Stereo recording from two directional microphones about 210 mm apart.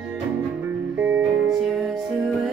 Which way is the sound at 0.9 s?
5° right (ahead or behind).